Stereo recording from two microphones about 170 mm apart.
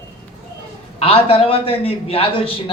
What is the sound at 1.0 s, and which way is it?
A man's voice, 35° left (ahead or behind).